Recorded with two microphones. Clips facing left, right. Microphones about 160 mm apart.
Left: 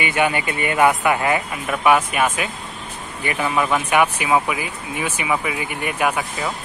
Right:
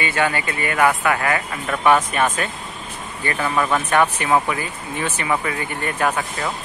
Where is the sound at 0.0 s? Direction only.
15° left (ahead or behind).